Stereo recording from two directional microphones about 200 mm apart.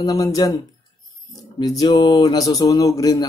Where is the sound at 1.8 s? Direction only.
20° left (ahead or behind).